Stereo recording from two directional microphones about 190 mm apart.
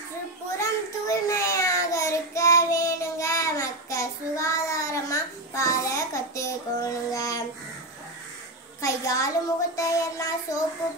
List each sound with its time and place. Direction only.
0.6 s child singing: 15° left (ahead or behind)
8.8 s a sound: 15° left (ahead or behind)
9.8 s music: 15° left (ahead or behind)